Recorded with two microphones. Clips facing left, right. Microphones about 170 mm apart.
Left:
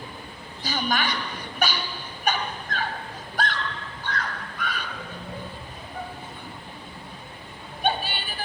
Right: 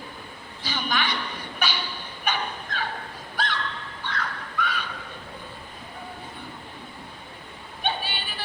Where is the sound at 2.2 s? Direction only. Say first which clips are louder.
Left 2 dB; 45° left (ahead or behind).